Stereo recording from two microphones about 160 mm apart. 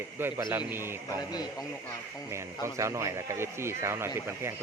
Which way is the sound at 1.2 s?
25° left (ahead or behind).